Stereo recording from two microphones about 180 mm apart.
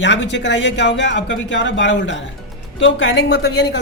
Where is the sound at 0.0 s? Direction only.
90° left.